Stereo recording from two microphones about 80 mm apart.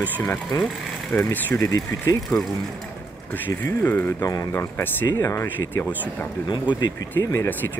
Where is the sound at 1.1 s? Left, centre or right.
Left.